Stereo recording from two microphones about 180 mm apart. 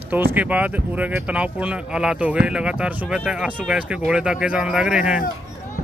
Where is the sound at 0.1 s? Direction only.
10° right (ahead or behind).